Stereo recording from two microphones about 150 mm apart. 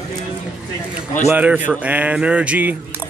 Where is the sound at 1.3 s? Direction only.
10° right (ahead or behind).